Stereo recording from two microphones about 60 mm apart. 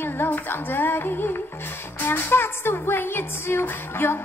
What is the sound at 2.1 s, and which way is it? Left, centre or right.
Music, left.